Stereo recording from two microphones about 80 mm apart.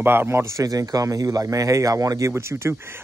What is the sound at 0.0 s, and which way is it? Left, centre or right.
A man's voice, right.